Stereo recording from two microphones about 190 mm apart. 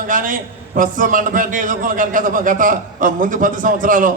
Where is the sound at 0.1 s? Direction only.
45° right (ahead or behind).